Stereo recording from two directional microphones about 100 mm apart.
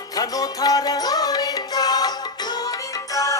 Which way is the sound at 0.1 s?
40° left (ahead or behind).